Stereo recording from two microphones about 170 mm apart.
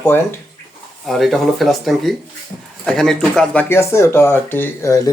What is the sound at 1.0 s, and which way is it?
Speech, centre (ahead or behind).